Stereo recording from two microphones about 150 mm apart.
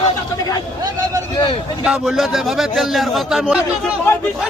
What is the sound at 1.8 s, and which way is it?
A man's voice, 5° right (ahead or behind).